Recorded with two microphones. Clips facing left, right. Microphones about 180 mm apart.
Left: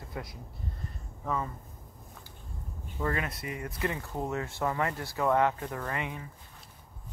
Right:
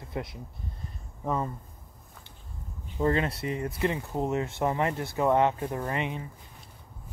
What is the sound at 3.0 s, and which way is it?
Speech, 25° right (ahead or behind).